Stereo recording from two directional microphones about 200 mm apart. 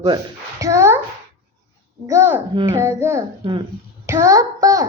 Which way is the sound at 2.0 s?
15° right (ahead or behind).